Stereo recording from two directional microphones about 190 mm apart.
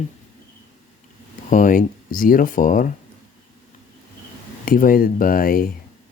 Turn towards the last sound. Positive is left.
turn(degrees=50)  # may be behind; listen again after turning